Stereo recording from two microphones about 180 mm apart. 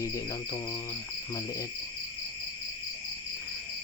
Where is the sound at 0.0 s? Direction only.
20° left (ahead or behind).